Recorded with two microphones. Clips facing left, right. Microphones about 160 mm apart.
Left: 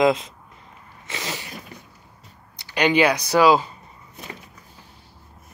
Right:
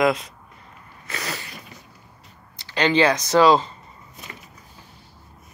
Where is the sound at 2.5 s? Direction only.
15° left (ahead or behind).